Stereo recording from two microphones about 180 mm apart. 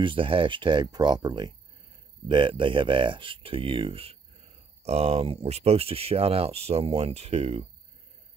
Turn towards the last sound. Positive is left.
turn(degrees=-35)  # may be behind; listen again after turning